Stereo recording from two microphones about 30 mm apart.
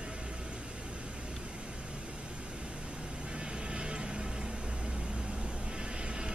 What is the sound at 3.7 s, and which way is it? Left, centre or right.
Music, right.